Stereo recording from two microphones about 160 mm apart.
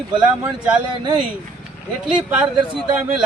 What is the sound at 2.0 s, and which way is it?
Speech, 5° right (ahead or behind).